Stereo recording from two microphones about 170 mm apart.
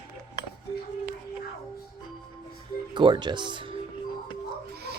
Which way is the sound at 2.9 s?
30° right (ahead or behind).